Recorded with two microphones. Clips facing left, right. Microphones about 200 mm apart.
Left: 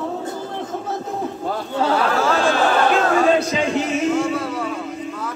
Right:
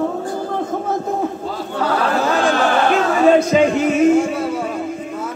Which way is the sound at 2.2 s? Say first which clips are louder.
Right 1 dB; 15° right (ahead or behind).